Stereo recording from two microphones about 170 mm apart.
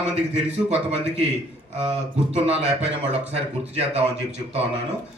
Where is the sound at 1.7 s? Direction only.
40° right (ahead or behind).